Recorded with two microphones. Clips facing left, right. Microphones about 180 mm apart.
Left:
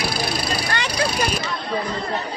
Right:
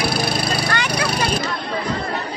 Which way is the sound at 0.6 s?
30° left (ahead or behind).